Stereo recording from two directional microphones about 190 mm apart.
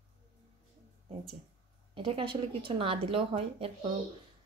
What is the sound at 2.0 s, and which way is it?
Speech, 25° right (ahead or behind).